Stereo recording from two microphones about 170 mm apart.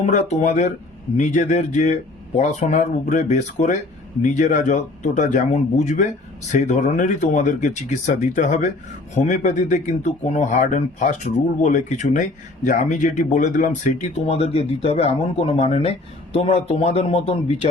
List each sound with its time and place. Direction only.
0.0 s speech: 40° left (ahead or behind)